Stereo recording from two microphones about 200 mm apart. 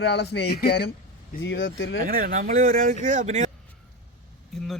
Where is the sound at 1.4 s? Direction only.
70° left (ahead or behind).